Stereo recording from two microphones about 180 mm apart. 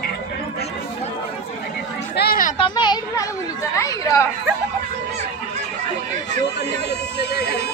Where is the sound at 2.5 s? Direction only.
25° left (ahead or behind).